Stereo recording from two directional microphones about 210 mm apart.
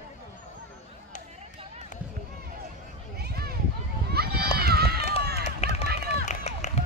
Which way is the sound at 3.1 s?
50° right (ahead or behind).